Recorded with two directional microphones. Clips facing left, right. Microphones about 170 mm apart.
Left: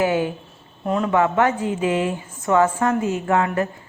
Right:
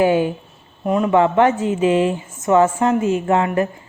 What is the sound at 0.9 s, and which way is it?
Speech, 10° right (ahead or behind).